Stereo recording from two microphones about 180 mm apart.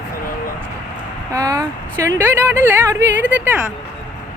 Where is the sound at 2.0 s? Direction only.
15° right (ahead or behind).